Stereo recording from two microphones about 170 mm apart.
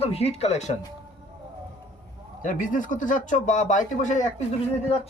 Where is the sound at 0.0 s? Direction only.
35° left (ahead or behind).